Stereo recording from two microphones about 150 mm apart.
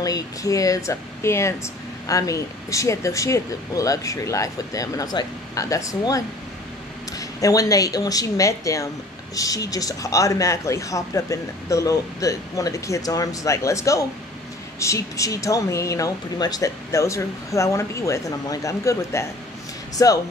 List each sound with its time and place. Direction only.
0.0 s speech: 25° left (ahead or behind)